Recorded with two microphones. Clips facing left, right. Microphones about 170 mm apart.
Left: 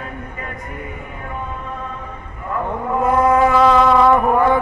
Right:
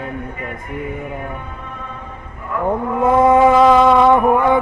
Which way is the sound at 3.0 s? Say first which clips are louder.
Right 3 dB; 25° right (ahead or behind).